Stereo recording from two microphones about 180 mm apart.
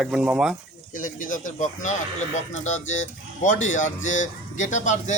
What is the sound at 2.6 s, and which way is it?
Speech, 40° left (ahead or behind).